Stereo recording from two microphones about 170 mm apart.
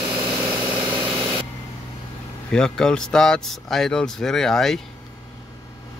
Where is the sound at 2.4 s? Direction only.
5° left (ahead or behind).